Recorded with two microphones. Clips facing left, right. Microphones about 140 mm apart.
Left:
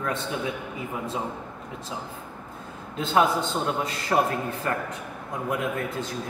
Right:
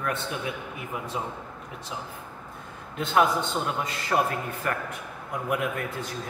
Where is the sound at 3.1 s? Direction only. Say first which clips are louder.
Left 1 dB; 35° left (ahead or behind).